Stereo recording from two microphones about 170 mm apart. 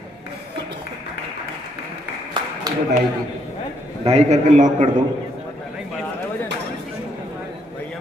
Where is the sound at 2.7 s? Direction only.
25° right (ahead or behind).